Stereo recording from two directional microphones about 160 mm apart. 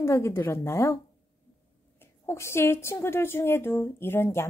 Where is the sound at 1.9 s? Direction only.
15° left (ahead or behind).